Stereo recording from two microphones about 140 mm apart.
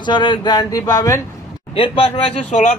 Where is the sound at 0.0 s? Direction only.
35° left (ahead or behind).